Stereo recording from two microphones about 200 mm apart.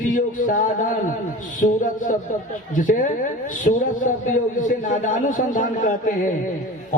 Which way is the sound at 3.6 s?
40° left (ahead or behind).